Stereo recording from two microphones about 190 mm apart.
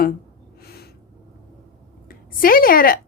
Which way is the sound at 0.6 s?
55° left (ahead or behind).